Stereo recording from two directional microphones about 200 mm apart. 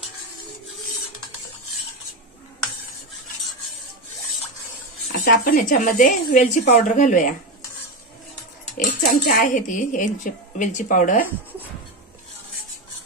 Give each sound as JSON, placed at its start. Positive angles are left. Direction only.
{"t": 5.1, "sound": "a woman's voice", "side_deg": 45}
{"t": 8.7, "sound": "a woman's voice", "side_deg": 40}